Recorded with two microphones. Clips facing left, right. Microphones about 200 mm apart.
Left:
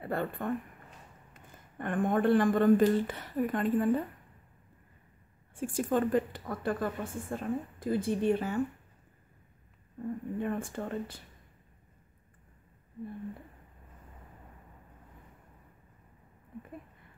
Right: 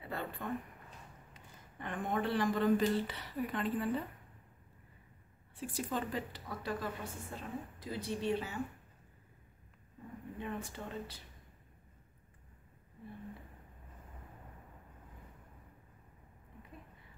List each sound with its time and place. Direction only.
0.0 s a woman's voice: 50° left (ahead or behind)
5.6 s a woman's voice: 50° left (ahead or behind)
10.4 s a woman's voice: 50° left (ahead or behind)